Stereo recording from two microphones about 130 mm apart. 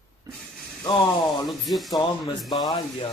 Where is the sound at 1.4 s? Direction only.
Centre (ahead or behind).